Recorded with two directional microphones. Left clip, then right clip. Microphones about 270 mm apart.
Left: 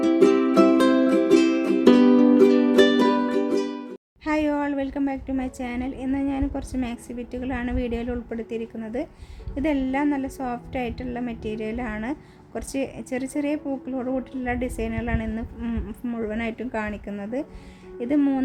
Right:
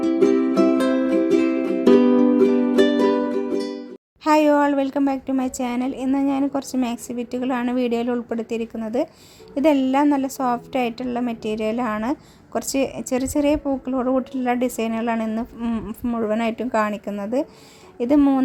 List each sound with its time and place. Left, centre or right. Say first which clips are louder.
0.0 s music: even; centre
4.2 s a woman's voice: right 8 dB; centre